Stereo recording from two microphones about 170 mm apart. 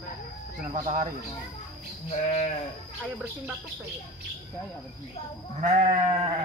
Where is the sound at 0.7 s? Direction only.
50° right (ahead or behind).